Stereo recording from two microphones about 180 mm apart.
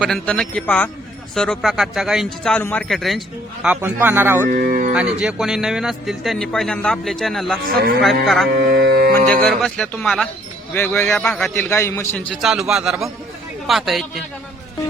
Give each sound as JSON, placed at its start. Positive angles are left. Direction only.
{"t": 0.3, "sound": "a man's voice", "side_deg": 10}
{"t": 3.8, "sound": "a man's voice", "side_deg": -10}
{"t": 4.4, "sound": "speech", "side_deg": -50}
{"t": 4.9, "sound": "a man's voice", "side_deg": -5}
{"t": 8.5, "sound": "speech", "side_deg": -60}
{"t": 9.2, "sound": "a man's voice", "side_deg": 5}
{"t": 11.7, "sound": "a man's voice", "side_deg": 15}